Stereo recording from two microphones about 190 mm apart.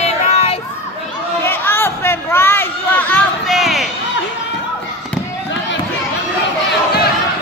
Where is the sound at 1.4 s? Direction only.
10° left (ahead or behind).